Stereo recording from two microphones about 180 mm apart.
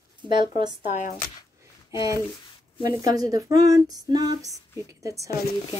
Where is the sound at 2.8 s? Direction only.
20° right (ahead or behind).